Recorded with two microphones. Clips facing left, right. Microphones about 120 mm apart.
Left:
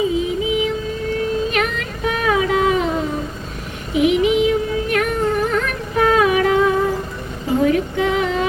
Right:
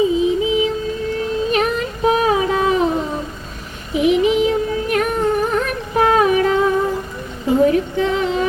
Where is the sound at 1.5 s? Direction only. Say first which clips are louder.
Right 3 dB; 35° right (ahead or behind).